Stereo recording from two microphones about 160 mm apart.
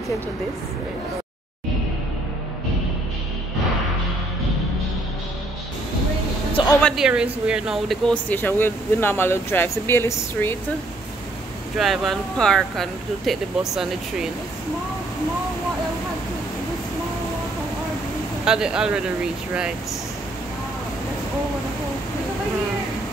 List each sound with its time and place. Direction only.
6.5 s vehicle: 25° left (ahead or behind)
6.8 s speech: 5° left (ahead or behind)
11.7 s speech: centre (ahead or behind)
18.4 s speech: 5° right (ahead or behind)